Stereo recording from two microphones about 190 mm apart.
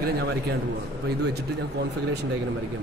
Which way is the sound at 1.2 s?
60° right (ahead or behind).